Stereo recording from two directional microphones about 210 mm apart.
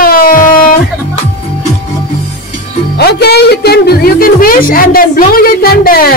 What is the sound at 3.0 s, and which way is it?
A man's voice, 50° left (ahead or behind).